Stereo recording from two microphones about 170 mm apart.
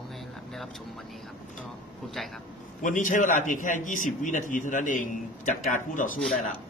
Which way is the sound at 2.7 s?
50° left (ahead or behind).